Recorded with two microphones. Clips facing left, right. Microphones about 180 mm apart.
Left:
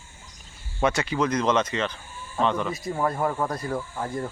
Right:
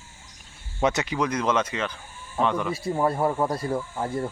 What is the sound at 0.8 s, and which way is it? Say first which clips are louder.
Speech: even; 20° right (ahead or behind).